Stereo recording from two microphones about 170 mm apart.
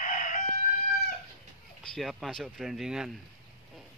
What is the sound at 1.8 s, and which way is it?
Speech, centre (ahead or behind).